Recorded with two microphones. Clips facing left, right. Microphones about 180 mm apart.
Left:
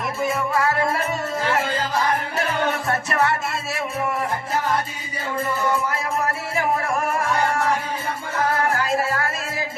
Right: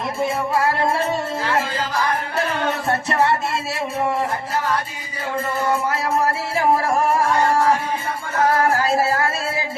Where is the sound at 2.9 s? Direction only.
25° right (ahead or behind).